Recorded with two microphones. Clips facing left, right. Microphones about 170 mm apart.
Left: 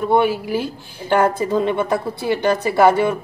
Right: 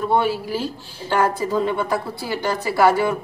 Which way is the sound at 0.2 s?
15° left (ahead or behind).